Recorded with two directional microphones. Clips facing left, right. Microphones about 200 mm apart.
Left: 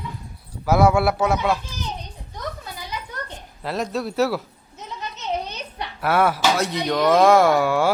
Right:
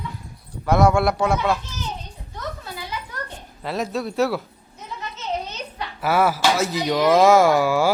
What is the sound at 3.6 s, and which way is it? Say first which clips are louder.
Speech: even; centre (ahead or behind).